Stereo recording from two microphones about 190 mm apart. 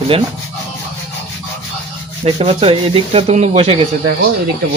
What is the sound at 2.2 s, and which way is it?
Speech, 30° right (ahead or behind).